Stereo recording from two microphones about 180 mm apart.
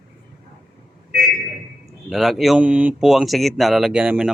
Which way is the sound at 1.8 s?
Centre (ahead or behind).